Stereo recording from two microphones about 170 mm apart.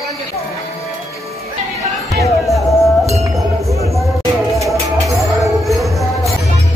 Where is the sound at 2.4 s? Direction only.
20° left (ahead or behind).